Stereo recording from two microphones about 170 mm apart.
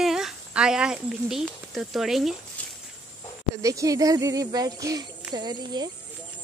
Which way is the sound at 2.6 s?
10° left (ahead or behind).